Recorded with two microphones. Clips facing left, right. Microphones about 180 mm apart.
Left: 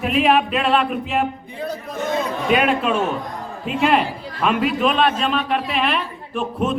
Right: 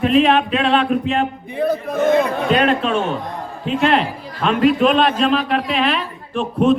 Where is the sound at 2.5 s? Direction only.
5° left (ahead or behind).